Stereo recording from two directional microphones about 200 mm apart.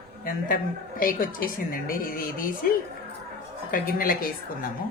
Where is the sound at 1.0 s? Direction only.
45° left (ahead or behind).